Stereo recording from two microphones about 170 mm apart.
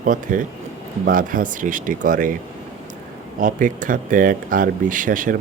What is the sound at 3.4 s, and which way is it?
Speech, 50° right (ahead or behind).